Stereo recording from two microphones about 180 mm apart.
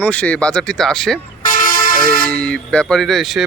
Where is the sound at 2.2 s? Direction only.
5° left (ahead or behind).